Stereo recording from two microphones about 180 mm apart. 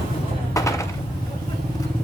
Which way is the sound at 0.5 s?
15° left (ahead or behind).